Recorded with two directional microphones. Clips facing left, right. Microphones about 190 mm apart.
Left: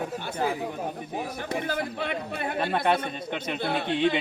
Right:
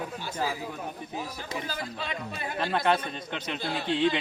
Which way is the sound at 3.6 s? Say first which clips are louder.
Left 1 dB; 60° left (ahead or behind).